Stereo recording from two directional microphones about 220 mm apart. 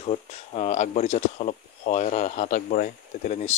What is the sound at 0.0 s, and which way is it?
Speech, 30° left (ahead or behind).